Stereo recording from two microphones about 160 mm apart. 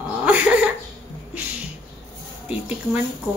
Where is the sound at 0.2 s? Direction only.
10° right (ahead or behind).